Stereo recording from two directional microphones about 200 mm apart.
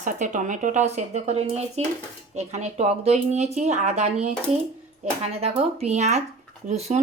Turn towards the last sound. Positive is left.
turn(degrees=-35)  # may be behind; listen again after turning